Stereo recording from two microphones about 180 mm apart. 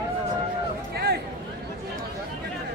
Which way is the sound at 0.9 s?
60° right (ahead or behind).